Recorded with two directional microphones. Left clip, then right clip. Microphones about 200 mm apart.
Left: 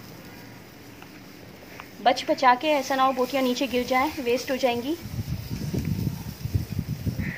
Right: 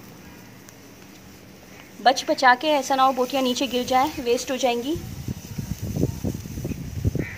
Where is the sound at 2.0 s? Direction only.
30° right (ahead or behind).